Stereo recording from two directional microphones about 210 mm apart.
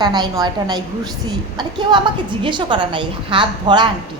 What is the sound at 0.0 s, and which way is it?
A woman's voice, 20° right (ahead or behind).